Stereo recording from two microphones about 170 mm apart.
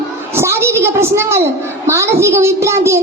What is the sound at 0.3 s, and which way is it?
A woman's voice, 15° right (ahead or behind).